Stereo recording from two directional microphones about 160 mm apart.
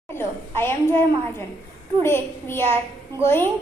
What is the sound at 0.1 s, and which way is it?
Speech, 15° left (ahead or behind).